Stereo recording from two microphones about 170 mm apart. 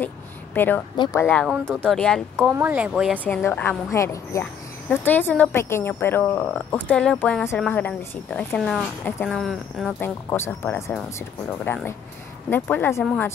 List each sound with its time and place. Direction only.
0.6 s speech: 10° left (ahead or behind)
0.9 s speech: 25° left (ahead or behind)
1.4 s speech: centre (ahead or behind)
2.4 s speech: 10° right (ahead or behind)
3.3 s speech: 10° left (ahead or behind)
9.9 s speech: 15° left (ahead or behind)